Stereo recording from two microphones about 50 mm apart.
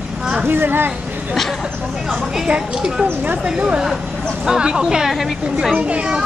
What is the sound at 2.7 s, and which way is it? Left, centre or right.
Speech, centre.